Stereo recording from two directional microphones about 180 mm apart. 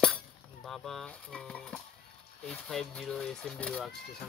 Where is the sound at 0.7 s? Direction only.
Centre (ahead or behind).